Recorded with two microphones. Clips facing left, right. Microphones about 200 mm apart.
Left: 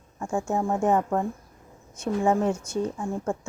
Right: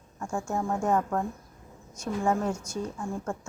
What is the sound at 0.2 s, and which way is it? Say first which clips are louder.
A woman's voice: left 4 dB; 20° left (ahead or behind).